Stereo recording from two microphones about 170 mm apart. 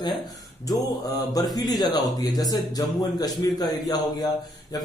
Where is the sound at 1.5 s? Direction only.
25° left (ahead or behind).